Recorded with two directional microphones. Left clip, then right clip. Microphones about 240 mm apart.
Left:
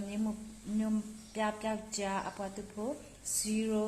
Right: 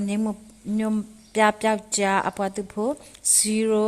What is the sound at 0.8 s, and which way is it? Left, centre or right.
Speech, right.